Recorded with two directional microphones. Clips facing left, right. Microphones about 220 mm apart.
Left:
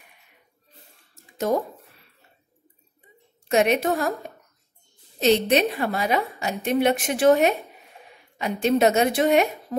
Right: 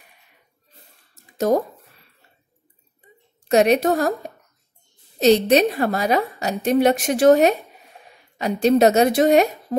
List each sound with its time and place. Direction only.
3.4 s a woman's voice: 35° right (ahead or behind)
5.2 s a woman's voice: 40° right (ahead or behind)